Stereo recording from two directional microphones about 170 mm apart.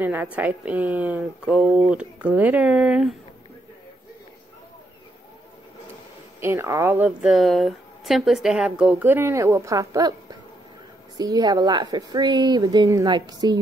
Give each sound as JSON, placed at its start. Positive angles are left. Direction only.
{"t": 0.0, "sound": "a woman's voice", "side_deg": -10}
{"t": 6.4, "sound": "a woman's voice", "side_deg": -15}
{"t": 11.1, "sound": "a woman's voice", "side_deg": -20}